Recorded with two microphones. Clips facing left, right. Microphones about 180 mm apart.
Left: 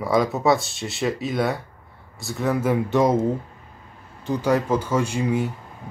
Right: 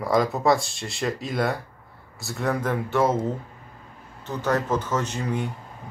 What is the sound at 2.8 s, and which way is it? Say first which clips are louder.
Speech: left 2 dB; 15° left (ahead or behind).